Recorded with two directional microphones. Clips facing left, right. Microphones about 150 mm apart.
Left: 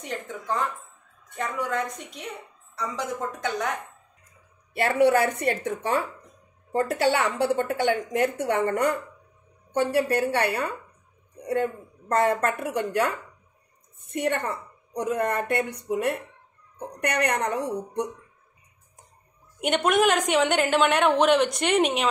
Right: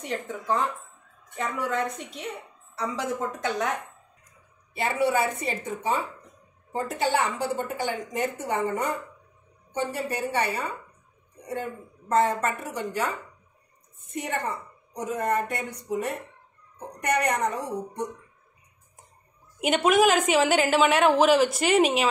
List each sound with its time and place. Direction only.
1.3 s a woman's voice: centre (ahead or behind)
2.8 s a woman's voice: 5° right (ahead or behind)
4.8 s a woman's voice: 70° left (ahead or behind)
12.2 s a woman's voice: 60° left (ahead or behind)
19.6 s a woman's voice: centre (ahead or behind)